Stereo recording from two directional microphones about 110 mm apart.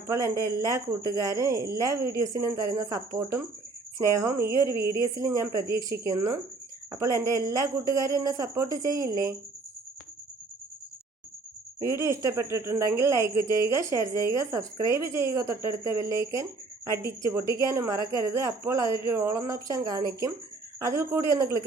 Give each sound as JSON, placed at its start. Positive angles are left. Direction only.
{"t": 0.1, "sound": "speech", "side_deg": -30}
{"t": 4.5, "sound": "a woman's voice", "side_deg": 40}
{"t": 5.4, "sound": "a woman's voice", "side_deg": -30}
{"t": 11.8, "sound": "speech", "side_deg": -25}